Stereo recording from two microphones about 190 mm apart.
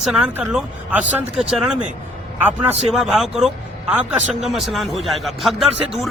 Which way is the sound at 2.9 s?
Centre (ahead or behind).